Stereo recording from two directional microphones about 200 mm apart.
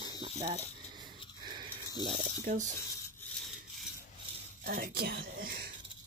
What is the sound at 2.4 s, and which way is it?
Speech, 40° right (ahead or behind).